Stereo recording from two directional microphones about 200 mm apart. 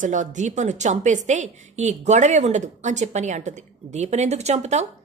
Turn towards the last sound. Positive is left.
turn(degrees=-35)  # may be behind; listen again after turning